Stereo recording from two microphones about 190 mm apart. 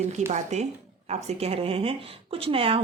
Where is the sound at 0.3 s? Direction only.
40° right (ahead or behind).